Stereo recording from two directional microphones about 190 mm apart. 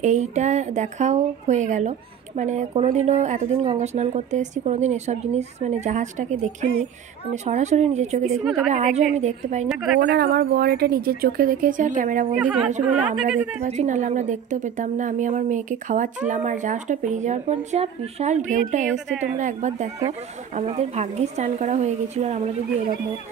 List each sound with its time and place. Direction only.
0.0 s speech: 40° right (ahead or behind)
10.0 s speech: 55° right (ahead or behind)
12.4 s a woman's voice: 5° right (ahead or behind)
13.4 s speech: 40° right (ahead or behind)
19.0 s a woman's voice: 5° right (ahead or behind)
19.3 s speech: 40° right (ahead or behind)